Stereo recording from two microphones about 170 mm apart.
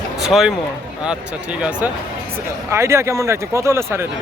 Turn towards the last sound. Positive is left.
turn(degrees=-15)  # may be behind; listen again after turning